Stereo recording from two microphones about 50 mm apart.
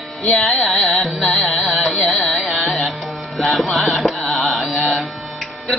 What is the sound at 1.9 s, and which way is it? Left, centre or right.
Carnatic music, centre.